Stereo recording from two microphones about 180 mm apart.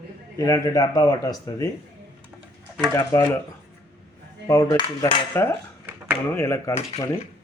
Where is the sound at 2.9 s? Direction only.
15° left (ahead or behind).